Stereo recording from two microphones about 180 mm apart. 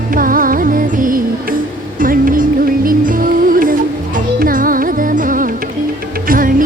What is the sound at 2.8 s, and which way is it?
Music, 50° right (ahead or behind).